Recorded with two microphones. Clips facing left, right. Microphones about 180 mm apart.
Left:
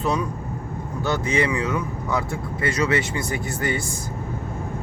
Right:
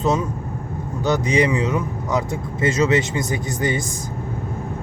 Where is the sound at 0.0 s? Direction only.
20° right (ahead or behind).